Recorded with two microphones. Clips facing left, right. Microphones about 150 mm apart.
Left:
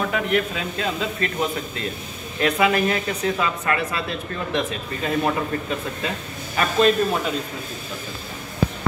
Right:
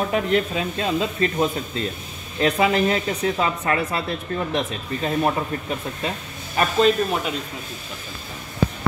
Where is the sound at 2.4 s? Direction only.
25° right (ahead or behind).